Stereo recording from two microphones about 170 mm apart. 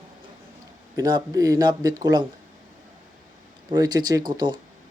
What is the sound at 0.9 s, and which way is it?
Speech, 20° right (ahead or behind).